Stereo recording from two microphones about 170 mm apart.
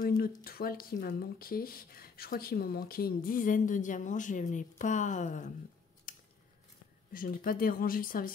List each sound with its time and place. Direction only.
0.2 s speech: 65° left (ahead or behind); by 5.5 s 45° left (ahead or behind)
6.1 s scissors: 55° left (ahead or behind)
7.1 s speech: 55° left (ahead or behind)